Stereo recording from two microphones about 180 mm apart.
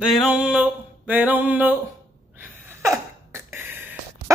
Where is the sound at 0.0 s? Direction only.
5° right (ahead or behind).